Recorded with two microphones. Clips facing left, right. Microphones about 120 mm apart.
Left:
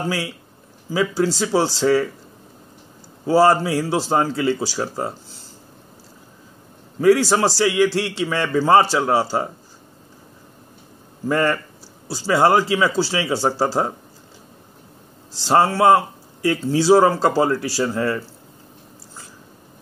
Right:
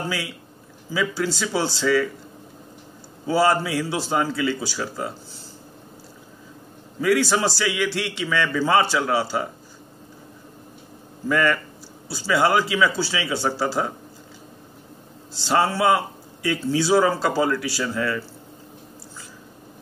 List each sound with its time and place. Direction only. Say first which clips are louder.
0.9 s speech: left 5 dB; 35° left (ahead or behind)
3.3 s speech: left 5 dB; 35° left (ahead or behind)
7.0 s speech: left 5 dB; 35° left (ahead or behind)
11.2 s speech: left 2 dB; 35° left (ahead or behind)
15.4 s speech: left 5 dB; 35° left (ahead or behind)